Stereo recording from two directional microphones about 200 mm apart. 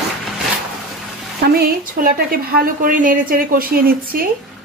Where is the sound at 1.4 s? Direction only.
50° right (ahead or behind).